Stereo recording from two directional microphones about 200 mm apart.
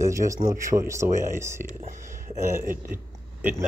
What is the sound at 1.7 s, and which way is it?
Speech, 40° right (ahead or behind).